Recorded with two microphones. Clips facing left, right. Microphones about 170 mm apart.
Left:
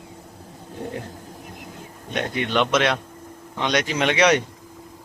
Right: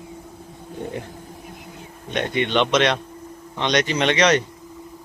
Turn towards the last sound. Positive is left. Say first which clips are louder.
# even
turn(degrees=10)  # may be behind; listen again after turning